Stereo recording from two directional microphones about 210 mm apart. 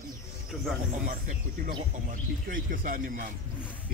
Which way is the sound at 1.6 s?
45° right (ahead or behind).